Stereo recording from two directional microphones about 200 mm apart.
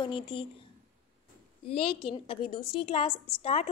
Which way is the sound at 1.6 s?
30° left (ahead or behind).